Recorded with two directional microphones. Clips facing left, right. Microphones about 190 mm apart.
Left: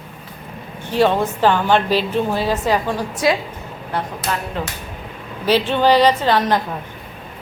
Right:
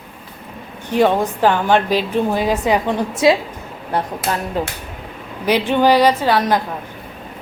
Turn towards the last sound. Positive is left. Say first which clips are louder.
# right 1 dB
turn(degrees=-10)  # may be behind; listen again after turning